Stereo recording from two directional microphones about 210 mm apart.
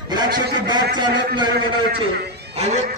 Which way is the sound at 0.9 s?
20° right (ahead or behind).